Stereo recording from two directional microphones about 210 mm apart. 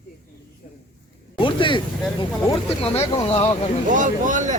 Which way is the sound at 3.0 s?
25° left (ahead or behind).